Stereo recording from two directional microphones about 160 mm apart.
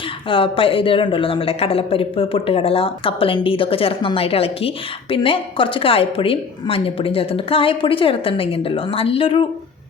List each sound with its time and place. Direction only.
0.3 s speech: 35° left (ahead or behind)